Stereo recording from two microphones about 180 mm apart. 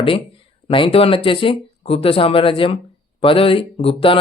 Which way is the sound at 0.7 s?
30° left (ahead or behind).